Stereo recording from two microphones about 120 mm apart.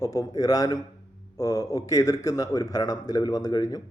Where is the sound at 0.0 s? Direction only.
30° left (ahead or behind).